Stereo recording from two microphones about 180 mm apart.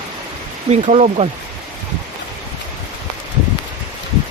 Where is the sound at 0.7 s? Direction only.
35° right (ahead or behind).